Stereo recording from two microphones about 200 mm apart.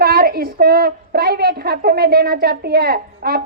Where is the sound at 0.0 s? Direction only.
50° right (ahead or behind).